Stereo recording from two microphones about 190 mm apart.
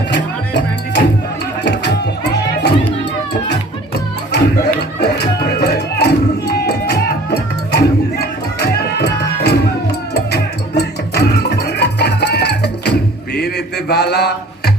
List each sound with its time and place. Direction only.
0.1 s music: 65° left (ahead or behind)
4.3 s music: 60° left (ahead or behind)